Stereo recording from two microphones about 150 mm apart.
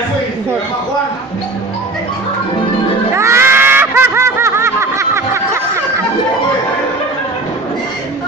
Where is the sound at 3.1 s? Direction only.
20° right (ahead or behind).